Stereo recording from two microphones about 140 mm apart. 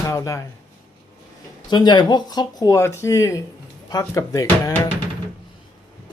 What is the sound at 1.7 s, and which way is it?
Speech, 30° left (ahead or behind).